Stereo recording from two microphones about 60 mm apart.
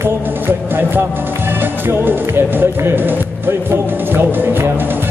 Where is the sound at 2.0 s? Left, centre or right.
Right.